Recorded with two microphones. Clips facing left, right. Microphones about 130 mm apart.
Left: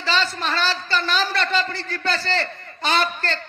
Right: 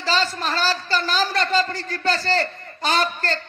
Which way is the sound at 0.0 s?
40° right (ahead or behind).